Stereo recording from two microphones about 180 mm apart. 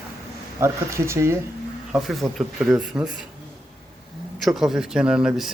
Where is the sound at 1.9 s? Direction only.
Centre (ahead or behind).